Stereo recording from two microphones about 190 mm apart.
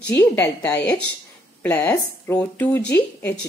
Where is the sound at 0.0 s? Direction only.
10° left (ahead or behind).